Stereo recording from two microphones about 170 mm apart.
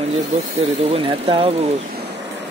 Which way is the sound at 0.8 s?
35° right (ahead or behind).